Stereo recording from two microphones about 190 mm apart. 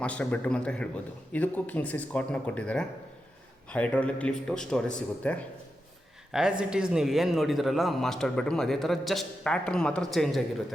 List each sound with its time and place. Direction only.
0.0 s a man's voice: 5° left (ahead or behind)
6.3 s speech: 5° right (ahead or behind)